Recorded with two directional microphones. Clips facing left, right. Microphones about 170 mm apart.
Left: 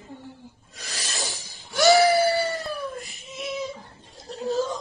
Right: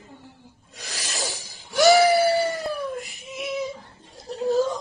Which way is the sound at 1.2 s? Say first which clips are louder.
Right 3 dB; 15° right (ahead or behind).